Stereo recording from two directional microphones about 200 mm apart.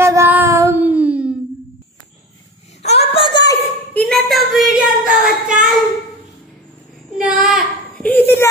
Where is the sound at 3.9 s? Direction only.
5° left (ahead or behind).